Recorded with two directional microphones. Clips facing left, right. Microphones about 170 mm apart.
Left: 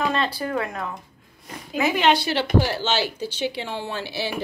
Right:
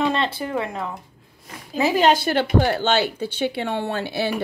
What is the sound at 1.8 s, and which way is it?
Speech, 35° right (ahead or behind).